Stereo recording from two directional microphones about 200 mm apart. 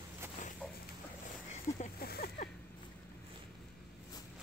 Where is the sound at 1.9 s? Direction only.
50° left (ahead or behind).